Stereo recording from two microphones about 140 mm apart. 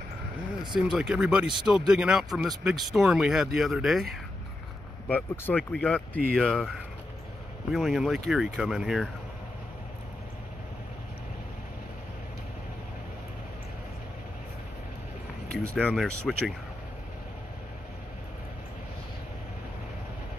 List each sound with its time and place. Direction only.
0.7 s speech: centre (ahead or behind)
5.0 s speech: 15° left (ahead or behind)
7.7 s speech: centre (ahead or behind)
15.4 s a sound: 90° right
15.7 s speech: 5° left (ahead or behind)